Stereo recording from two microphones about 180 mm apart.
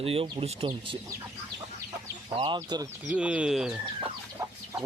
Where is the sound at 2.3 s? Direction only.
30° right (ahead or behind).